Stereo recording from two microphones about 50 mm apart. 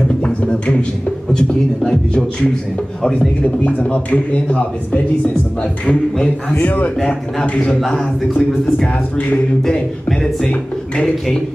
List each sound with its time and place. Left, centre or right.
0.2 s a sound: left
3.0 s a man's voice: centre
3.4 s a man's voice: left
5.6 s a man's voice: centre
6.6 s a man's voice: left
7.5 s a man's voice: centre
9.6 s a man's voice: centre